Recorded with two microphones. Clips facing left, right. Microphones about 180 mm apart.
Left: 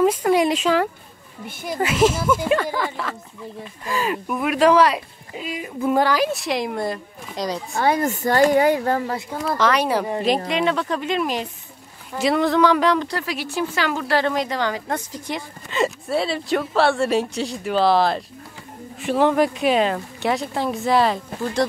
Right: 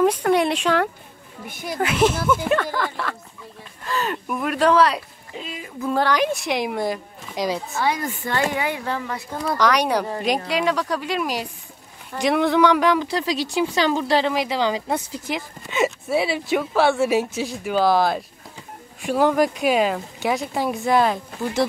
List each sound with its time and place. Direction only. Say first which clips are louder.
0.0 s a sound: left 1 dB; 5° left (ahead or behind)
1.8 s speech: left 1 dB; 5° left (ahead or behind)
7.8 s speech: left 6 dB; 50° left (ahead or behind)
9.3 s speech: right 1 dB; centre (ahead or behind)
13.1 s a woman's voice: right 3 dB; 15° right (ahead or behind); by 21.6 s centre (ahead or behind)